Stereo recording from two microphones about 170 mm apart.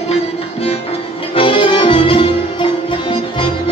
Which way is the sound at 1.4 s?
30° left (ahead or behind).